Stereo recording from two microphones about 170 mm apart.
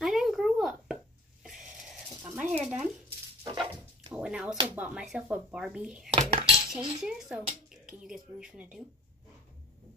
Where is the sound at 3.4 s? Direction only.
30° right (ahead or behind).